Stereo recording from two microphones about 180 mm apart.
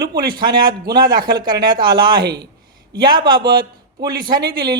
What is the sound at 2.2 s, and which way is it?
Speech, 70° right (ahead or behind).